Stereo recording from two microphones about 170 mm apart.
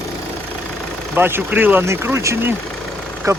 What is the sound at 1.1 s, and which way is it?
Speech, 10° right (ahead or behind).